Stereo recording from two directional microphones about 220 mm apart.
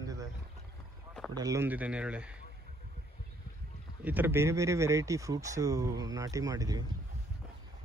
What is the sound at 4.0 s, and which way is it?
Speech, 10° right (ahead or behind).